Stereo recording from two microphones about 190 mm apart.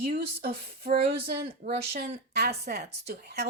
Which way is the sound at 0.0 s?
55° right (ahead or behind).